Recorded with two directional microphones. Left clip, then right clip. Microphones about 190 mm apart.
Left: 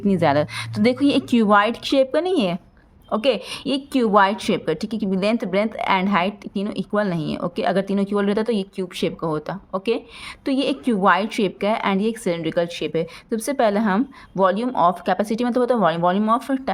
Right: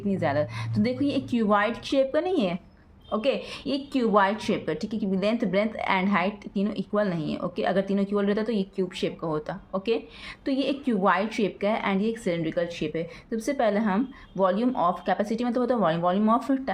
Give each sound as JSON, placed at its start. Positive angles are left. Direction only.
{"t": 0.1, "sound": "a woman's voice", "side_deg": 45}